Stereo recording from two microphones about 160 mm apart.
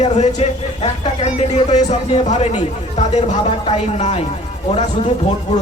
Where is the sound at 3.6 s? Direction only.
40° left (ahead or behind).